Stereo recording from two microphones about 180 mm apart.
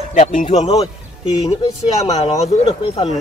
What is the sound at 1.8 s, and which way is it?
Speech, 35° left (ahead or behind).